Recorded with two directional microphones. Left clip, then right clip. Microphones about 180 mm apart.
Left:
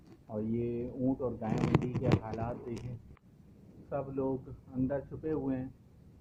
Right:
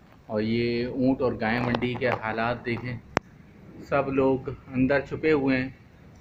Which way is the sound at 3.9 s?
20° right (ahead or behind).